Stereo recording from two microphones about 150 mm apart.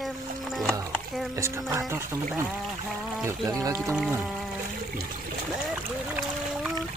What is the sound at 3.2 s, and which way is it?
Speech, 20° right (ahead or behind).